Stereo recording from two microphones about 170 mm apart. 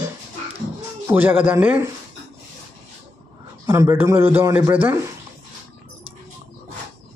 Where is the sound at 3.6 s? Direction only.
15° right (ahead or behind).